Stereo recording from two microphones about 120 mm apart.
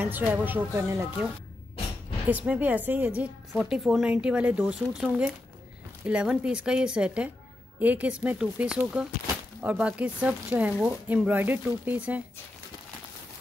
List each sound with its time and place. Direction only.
0.0 s speech: 15° right (ahead or behind)
2.2 s speech: 10° right (ahead or behind)
3.5 s speech: 5° right (ahead or behind)